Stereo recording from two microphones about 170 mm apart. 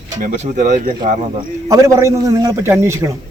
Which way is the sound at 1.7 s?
15° right (ahead or behind).